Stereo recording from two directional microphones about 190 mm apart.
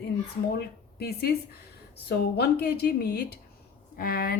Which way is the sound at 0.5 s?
55° left (ahead or behind).